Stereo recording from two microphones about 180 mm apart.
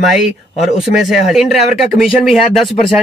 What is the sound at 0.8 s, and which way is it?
Speech, centre (ahead or behind).